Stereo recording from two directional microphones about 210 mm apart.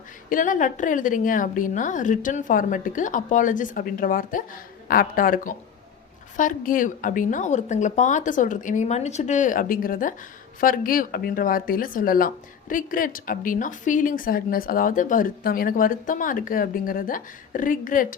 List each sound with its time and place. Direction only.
0.3 s a woman's voice: 40° left (ahead or behind)